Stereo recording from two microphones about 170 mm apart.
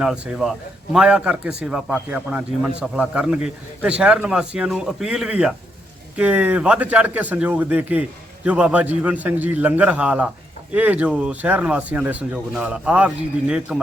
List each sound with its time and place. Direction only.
0.0 s a man's voice: 5° right (ahead or behind)